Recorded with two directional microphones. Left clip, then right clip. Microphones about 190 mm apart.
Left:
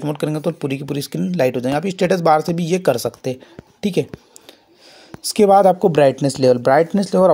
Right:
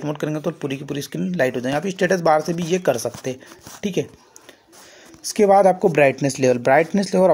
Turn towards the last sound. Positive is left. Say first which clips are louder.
# left 2 dB
turn(degrees=15)  # may be behind; listen again after turning